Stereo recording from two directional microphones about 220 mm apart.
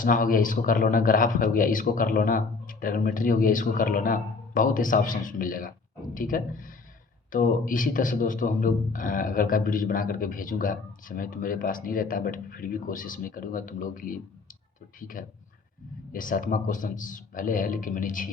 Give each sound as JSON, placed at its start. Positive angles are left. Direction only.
{"t": 0.0, "sound": "a man's voice", "side_deg": 40}